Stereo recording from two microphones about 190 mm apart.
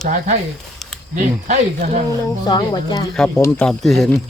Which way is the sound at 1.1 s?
40° right (ahead or behind).